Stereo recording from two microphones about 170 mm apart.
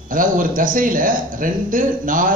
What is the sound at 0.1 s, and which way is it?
A man's voice, 55° right (ahead or behind).